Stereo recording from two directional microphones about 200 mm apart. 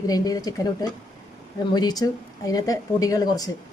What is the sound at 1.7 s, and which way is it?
Speech, 20° left (ahead or behind).